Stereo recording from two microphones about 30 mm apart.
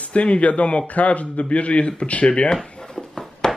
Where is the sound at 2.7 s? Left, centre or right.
Left.